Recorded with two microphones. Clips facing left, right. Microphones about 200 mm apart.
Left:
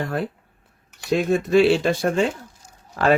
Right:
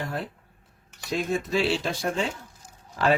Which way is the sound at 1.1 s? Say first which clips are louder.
Left 9 dB; 60° left (ahead or behind).